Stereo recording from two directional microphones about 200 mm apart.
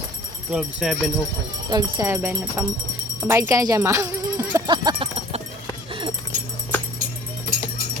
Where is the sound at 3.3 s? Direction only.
15° right (ahead or behind).